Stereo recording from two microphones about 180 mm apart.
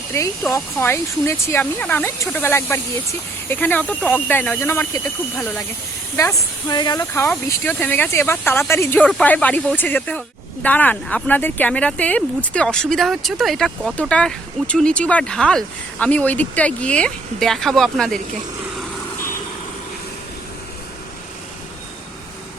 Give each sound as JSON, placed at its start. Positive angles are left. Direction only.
{"t": 0.1, "sound": "speech", "side_deg": 15}
{"t": 6.1, "sound": "speech", "side_deg": 20}